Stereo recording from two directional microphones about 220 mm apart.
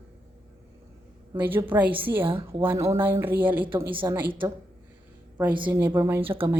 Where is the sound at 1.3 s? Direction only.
10° right (ahead or behind).